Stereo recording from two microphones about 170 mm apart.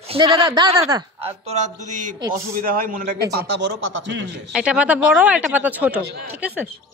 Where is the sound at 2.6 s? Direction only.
55° right (ahead or behind).